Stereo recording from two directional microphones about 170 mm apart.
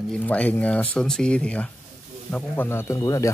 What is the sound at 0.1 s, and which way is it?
Speech, 10° left (ahead or behind).